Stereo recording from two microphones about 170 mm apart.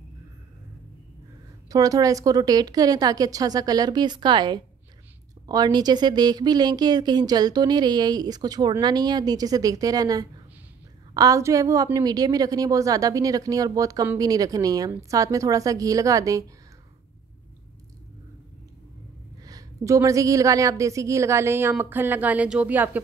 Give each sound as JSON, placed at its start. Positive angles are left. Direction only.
{"t": 1.7, "sound": "a woman's voice", "side_deg": -20}
{"t": 19.4, "sound": "a woman's voice", "side_deg": -20}